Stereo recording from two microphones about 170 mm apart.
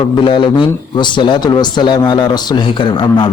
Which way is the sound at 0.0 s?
30° left (ahead or behind).